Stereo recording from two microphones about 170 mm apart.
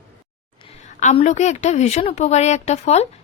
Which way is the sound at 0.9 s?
45° left (ahead or behind).